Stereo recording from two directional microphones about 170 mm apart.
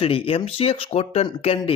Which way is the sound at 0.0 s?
35° left (ahead or behind).